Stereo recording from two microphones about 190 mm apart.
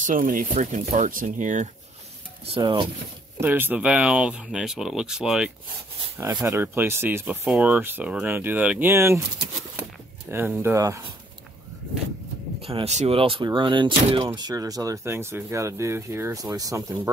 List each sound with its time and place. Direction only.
0.0 s speech: 45° right (ahead or behind)
2.5 s speech: 25° right (ahead or behind)
3.3 s speech: 10° right (ahead or behind)
6.1 s speech: 15° right (ahead or behind)
10.3 s speech: 10° right (ahead or behind)
12.6 s speech: 30° right (ahead or behind); by 17.1 s 15° right (ahead or behind)